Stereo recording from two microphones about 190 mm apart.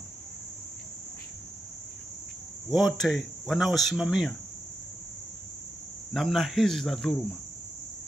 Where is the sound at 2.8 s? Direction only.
Centre (ahead or behind).